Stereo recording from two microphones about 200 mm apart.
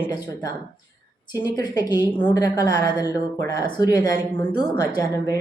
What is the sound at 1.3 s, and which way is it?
Speech, 20° left (ahead or behind).